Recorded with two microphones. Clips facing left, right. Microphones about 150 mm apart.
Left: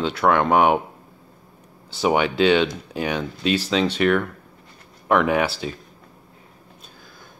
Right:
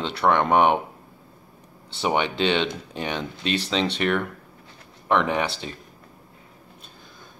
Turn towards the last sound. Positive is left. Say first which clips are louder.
# left 4 dB
turn(degrees=5)  # may be behind; listen again after turning